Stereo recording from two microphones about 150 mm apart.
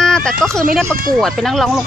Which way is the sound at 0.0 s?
5° left (ahead or behind).